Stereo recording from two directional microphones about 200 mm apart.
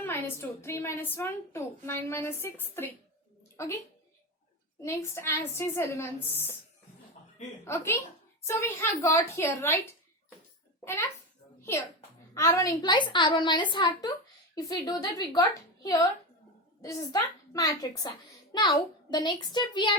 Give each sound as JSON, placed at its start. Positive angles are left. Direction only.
{"t": 0.0, "sound": "a woman's voice", "side_deg": 10}
{"t": 4.8, "sound": "a woman's voice", "side_deg": 15}
{"t": 7.6, "sound": "a woman's voice", "side_deg": 15}
{"t": 11.7, "sound": "a woman's voice", "side_deg": 15}